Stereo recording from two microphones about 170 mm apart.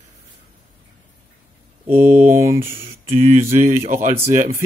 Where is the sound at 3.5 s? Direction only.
50° right (ahead or behind).